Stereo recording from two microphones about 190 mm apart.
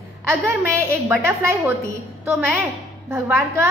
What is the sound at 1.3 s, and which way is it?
A woman's voice, 15° right (ahead or behind).